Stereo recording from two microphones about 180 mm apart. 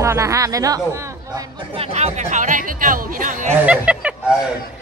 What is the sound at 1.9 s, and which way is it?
Speech, 40° right (ahead or behind).